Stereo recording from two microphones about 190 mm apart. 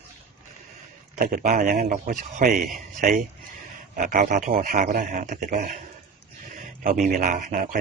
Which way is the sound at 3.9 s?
45° right (ahead or behind).